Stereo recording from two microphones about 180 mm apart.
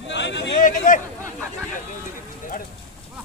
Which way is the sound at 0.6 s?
45° left (ahead or behind).